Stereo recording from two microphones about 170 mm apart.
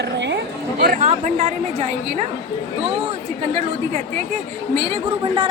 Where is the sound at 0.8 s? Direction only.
50° right (ahead or behind).